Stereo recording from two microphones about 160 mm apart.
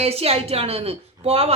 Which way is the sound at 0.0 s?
40° right (ahead or behind).